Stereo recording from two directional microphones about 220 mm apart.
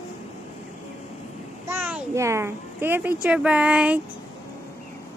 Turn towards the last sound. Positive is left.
turn(degrees=-5)  # may be behind; listen again after turning